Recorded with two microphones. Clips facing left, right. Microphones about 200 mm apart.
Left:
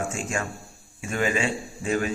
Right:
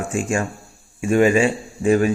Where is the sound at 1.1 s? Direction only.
30° right (ahead or behind).